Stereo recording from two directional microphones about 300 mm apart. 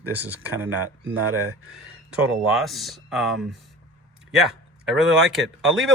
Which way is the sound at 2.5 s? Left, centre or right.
Centre.